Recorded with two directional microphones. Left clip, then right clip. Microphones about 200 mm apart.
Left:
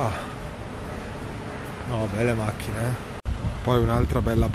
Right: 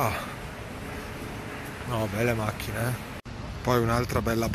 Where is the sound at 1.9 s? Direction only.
5° left (ahead or behind).